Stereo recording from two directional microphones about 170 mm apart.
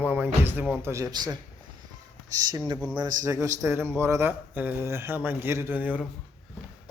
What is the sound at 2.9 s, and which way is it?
Speech, 20° right (ahead or behind).